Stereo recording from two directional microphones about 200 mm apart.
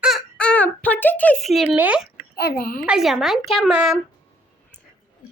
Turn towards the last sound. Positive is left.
turn(degrees=-5)  # may be behind; listen again after turning